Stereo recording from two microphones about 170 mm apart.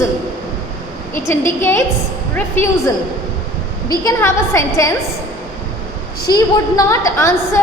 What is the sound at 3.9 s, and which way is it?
A woman's voice, 20° left (ahead or behind).